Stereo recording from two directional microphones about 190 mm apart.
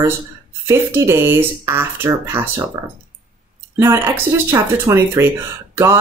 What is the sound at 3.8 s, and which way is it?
Speech, 15° right (ahead or behind).